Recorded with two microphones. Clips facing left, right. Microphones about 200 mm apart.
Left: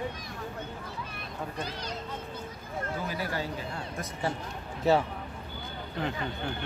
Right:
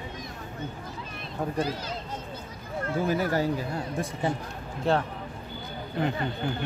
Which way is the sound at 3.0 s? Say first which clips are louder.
Right 8 dB; 45° right (ahead or behind).